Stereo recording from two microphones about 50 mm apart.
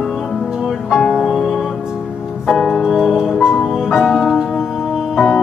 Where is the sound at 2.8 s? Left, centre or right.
Centre.